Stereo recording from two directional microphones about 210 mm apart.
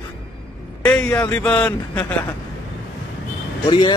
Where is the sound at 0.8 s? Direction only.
5° left (ahead or behind).